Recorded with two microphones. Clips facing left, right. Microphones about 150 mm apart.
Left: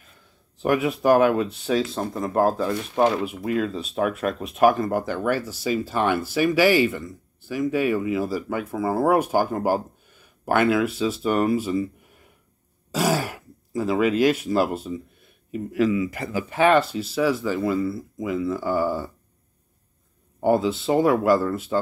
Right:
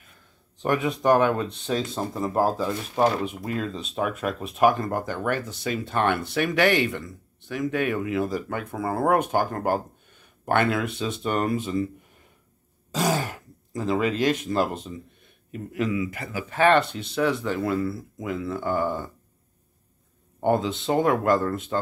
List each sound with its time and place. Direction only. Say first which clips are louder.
0.6 s speech: left 3 dB; 5° left (ahead or behind)
12.9 s throat clearing: left 2 dB; 5° left (ahead or behind)
16.1 s speech: left 5 dB; 35° left (ahead or behind)
16.4 s speech: left 1 dB; 10° left (ahead or behind)
20.3 s speech: left 3 dB; 5° left (ahead or behind)